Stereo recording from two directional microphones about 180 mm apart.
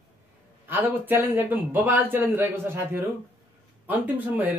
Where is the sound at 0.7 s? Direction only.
10° right (ahead or behind).